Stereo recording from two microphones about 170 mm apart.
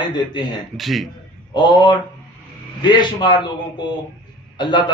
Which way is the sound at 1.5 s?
25° left (ahead or behind).